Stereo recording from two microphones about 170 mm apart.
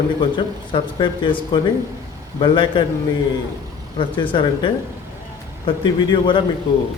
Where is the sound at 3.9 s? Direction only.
30° left (ahead or behind).